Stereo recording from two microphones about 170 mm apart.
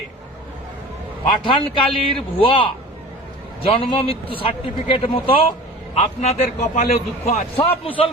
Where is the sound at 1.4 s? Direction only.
30° left (ahead or behind).